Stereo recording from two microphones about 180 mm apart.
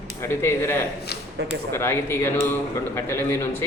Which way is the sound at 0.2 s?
15° left (ahead or behind).